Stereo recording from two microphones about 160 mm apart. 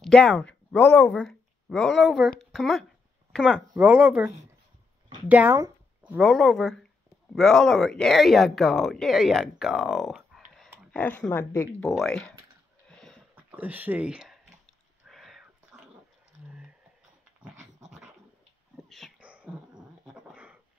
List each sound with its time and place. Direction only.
0.0 s speech: centre (ahead or behind)
5.3 s speech: 10° right (ahead or behind)
10.9 s speech: 10° left (ahead or behind)
11.8 s speech: 5° left (ahead or behind)
12.8 s a sound: 5° left (ahead or behind)
13.5 s speech: 10° right (ahead or behind)
15.0 s a sound: centre (ahead or behind)
17.4 s dog: 5° right (ahead or behind)